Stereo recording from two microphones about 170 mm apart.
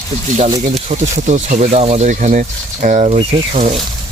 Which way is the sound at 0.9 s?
45° right (ahead or behind).